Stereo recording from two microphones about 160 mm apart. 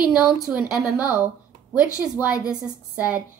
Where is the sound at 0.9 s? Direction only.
20° left (ahead or behind).